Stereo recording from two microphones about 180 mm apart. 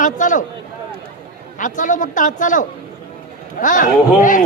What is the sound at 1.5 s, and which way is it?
A woman's voice, 45° left (ahead or behind).